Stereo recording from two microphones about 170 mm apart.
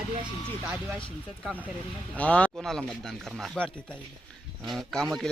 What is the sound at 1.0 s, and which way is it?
A man's voice, 5° left (ahead or behind).